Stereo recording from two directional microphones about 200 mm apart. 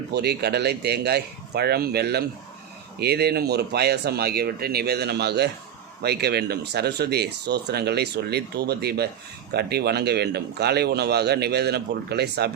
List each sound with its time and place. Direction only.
0.1 s speech: 55° right (ahead or behind)